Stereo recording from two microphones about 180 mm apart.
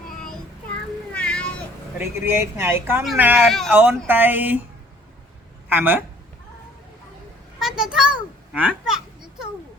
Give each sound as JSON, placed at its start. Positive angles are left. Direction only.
{"t": 1.1, "sound": "cat", "side_deg": 5}
{"t": 2.0, "sound": "speech", "side_deg": -15}
{"t": 3.7, "sound": "speech", "side_deg": -10}
{"t": 5.6, "sound": "speech", "side_deg": -10}
{"t": 7.6, "sound": "a sound", "side_deg": -5}